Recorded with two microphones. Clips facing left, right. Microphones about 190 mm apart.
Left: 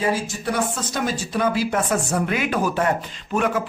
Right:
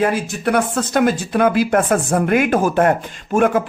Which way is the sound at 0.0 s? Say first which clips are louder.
Right 5 dB; 60° right (ahead or behind).